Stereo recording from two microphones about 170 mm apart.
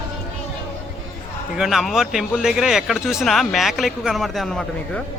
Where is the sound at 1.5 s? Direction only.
Centre (ahead or behind).